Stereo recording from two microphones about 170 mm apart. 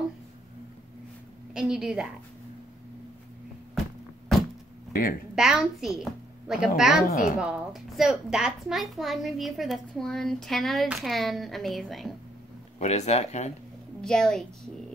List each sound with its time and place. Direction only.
1.5 s a child's voice: 5° right (ahead or behind)
5.3 s a woman's voice: 5° right (ahead or behind)
7.1 s a woman's voice: 55° left (ahead or behind)
7.3 s a child's voice: 5° right (ahead or behind)
12.7 s speech: 40° left (ahead or behind)
14.0 s a child's voice: 5° left (ahead or behind)